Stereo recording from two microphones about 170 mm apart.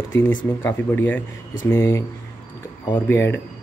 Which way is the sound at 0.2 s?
10° left (ahead or behind).